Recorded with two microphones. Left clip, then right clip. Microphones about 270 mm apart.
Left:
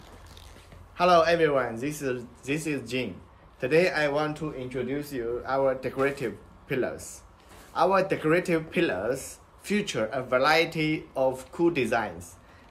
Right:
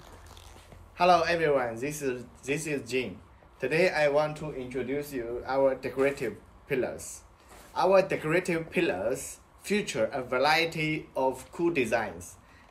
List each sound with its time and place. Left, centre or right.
0.9 s speech: centre
4.2 s a man's voice: left
4.6 s speech: centre
9.3 s a sound: centre
9.9 s speech: centre